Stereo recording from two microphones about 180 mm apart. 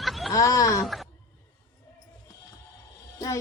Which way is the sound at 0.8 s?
Centre (ahead or behind).